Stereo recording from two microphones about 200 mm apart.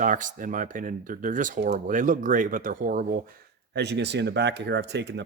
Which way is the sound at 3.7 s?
60° right (ahead or behind).